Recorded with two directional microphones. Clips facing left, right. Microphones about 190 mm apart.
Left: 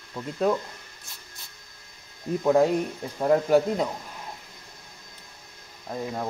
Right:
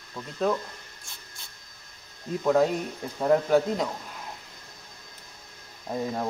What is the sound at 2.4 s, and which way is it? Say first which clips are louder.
Speech: left 2 dB; 10° left (ahead or behind).